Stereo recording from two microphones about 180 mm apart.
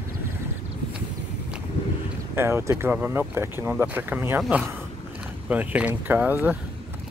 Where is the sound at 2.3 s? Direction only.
15° right (ahead or behind).